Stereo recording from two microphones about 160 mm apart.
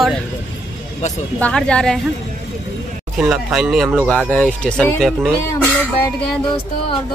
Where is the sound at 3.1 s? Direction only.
5° right (ahead or behind).